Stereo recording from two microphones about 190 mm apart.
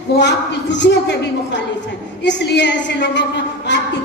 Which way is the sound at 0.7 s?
65° left (ahead or behind).